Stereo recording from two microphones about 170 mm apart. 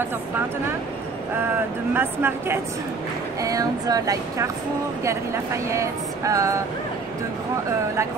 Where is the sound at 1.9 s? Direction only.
10° right (ahead or behind).